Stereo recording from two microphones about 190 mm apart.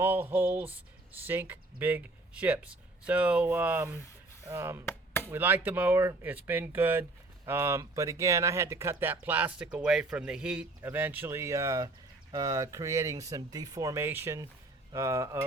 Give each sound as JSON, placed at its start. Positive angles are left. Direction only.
{"t": 0.0, "sound": "speech", "side_deg": -10}
{"t": 4.9, "sound": "chop", "side_deg": 10}
{"t": 5.3, "sound": "speech", "side_deg": -10}